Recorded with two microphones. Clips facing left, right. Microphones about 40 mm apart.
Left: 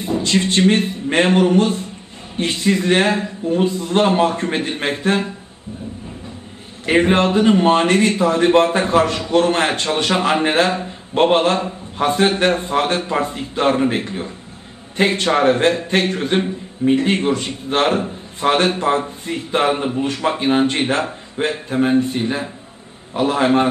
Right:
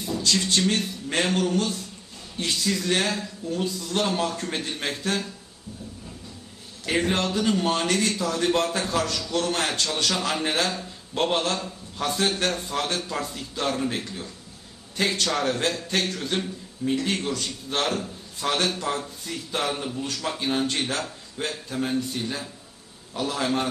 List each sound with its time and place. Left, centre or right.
0.0 s a man's voice: left
6.9 s speech: left